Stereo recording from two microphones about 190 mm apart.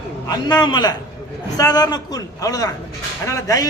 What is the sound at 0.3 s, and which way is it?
A man's voice, 20° left (ahead or behind).